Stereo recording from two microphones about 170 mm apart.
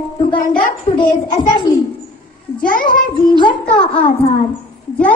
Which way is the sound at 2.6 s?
55° left (ahead or behind).